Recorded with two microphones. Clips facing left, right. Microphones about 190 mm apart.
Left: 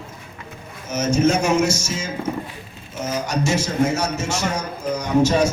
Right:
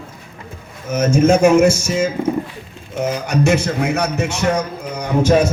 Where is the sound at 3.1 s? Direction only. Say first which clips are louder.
Right 5 dB; 60° right (ahead or behind).